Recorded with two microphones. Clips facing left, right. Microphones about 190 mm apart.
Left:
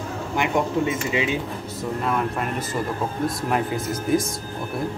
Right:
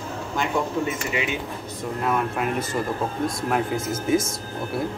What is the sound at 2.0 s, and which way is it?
Speech, 5° right (ahead or behind).